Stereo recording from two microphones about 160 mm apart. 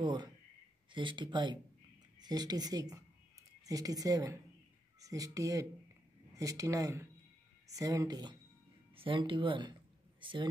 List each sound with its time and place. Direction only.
0.0 s speech: 30° right (ahead or behind)